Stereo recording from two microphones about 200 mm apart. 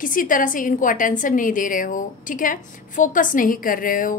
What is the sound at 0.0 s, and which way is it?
A woman's voice, 45° left (ahead or behind).